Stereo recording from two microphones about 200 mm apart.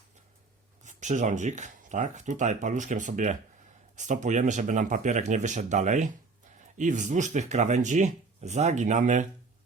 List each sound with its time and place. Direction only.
0.9 s speech: 35° right (ahead or behind)